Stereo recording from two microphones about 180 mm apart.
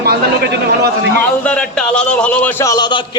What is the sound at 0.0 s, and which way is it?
Speech, 60° right (ahead or behind).